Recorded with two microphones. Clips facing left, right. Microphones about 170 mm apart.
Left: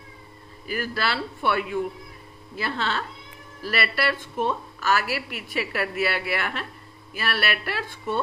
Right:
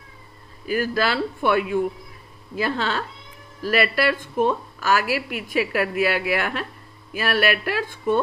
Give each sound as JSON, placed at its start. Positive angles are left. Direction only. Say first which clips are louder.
{"t": 0.7, "sound": "a woman's voice", "louder": "right 6 dB", "side_deg": -45}
{"t": 2.6, "sound": "a woman's voice", "louder": "right 4 dB", "side_deg": -45}